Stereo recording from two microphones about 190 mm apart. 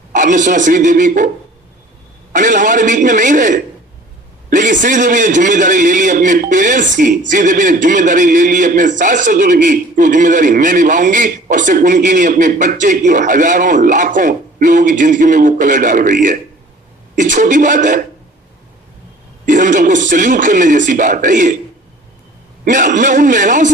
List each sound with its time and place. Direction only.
0.1 s a man's voice: 40° right (ahead or behind)
2.3 s a man's voice: 45° right (ahead or behind)
19.5 s a man's voice: 45° right (ahead or behind)
22.6 s a man's voice: 45° right (ahead or behind)